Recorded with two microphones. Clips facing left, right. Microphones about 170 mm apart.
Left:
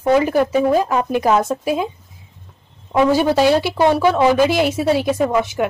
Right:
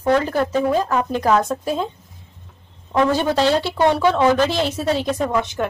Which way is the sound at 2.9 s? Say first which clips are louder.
Left 3 dB; 10° left (ahead or behind).